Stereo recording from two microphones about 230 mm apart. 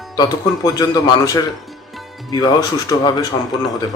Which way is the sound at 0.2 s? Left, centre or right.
Centre.